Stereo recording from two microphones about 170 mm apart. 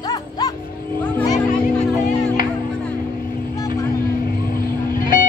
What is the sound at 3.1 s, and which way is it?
Vehicle, 60° left (ahead or behind).